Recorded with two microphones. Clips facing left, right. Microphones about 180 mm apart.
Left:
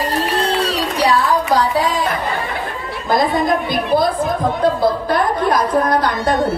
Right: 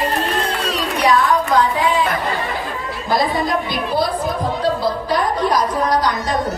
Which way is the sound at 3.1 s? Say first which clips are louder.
Left 3 dB; 50° left (ahead or behind).